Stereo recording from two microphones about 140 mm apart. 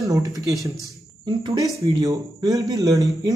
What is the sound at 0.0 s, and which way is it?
A man's voice, 25° right (ahead or behind).